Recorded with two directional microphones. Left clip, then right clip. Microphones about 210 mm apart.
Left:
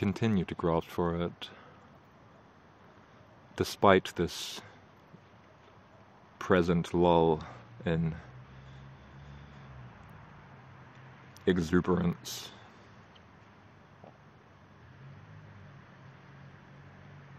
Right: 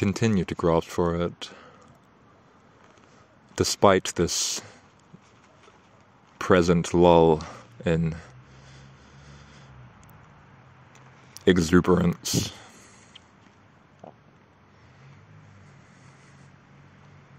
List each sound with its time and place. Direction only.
0.0 s speech: 30° right (ahead or behind)
3.5 s speech: 30° right (ahead or behind)
6.3 s speech: 30° right (ahead or behind)
11.3 s speech: 35° right (ahead or behind)